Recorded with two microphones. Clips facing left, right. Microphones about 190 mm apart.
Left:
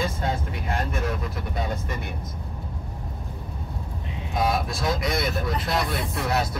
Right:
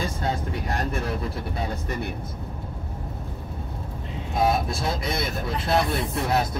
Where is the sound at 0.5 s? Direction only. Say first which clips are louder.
Right 1 dB; 35° right (ahead or behind).